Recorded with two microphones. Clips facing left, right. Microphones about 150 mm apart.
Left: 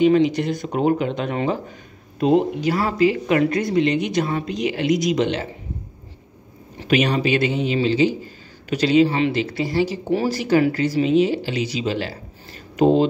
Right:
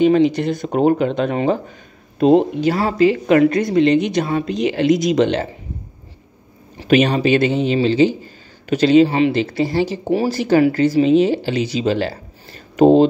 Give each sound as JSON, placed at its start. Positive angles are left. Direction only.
{"t": 0.0, "sound": "speech", "side_deg": -30}
{"t": 0.6, "sound": "speech", "side_deg": -40}
{"t": 6.9, "sound": "speech", "side_deg": -25}